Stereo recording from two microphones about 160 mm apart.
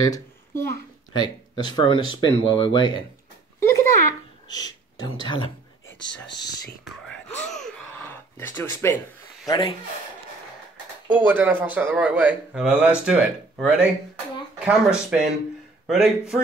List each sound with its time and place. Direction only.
0.0 s a child's voice: 25° left (ahead or behind)
3.5 s a sound: 15° left (ahead or behind)
4.5 s speech: 25° left (ahead or behind)
6.8 s wail: 5° left (ahead or behind)
8.0 s a sound: 15° left (ahead or behind)
9.5 s speech: 35° left (ahead or behind)
11.1 s speech: 10° right (ahead or behind)